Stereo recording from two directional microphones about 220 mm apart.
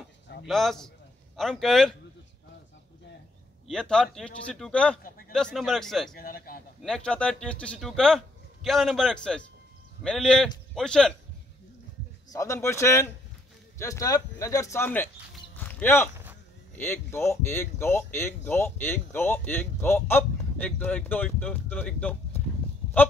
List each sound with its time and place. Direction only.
0.5 s speech: centre (ahead or behind)
3.6 s speech: 5° left (ahead or behind)
6.1 s a man's voice: 45° left (ahead or behind)
6.8 s speech: 5° left (ahead or behind)
12.3 s speech: 15° left (ahead or behind)
15.5 s a sound: 10° left (ahead or behind)
16.7 s speech: 10° left (ahead or behind)